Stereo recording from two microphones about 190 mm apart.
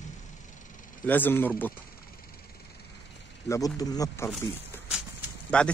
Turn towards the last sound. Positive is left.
turn(degrees=5)  # may be behind; listen again after turning